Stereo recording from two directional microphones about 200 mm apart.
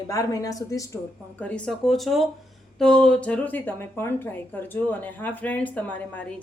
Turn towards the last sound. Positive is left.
turn(degrees=10)  # may be behind; listen again after turning